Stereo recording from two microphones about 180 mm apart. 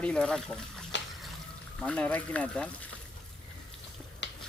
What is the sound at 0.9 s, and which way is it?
Water, 90° left.